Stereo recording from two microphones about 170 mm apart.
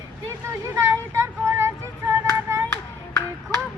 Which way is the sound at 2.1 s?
15° right (ahead or behind).